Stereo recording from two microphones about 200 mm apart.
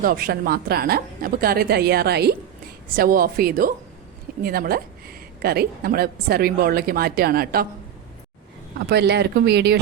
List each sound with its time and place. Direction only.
0.0 s a woman's voice: 45° right (ahead or behind)
8.9 s speech: 55° right (ahead or behind)